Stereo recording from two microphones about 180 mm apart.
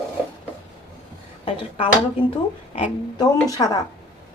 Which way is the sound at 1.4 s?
30° left (ahead or behind).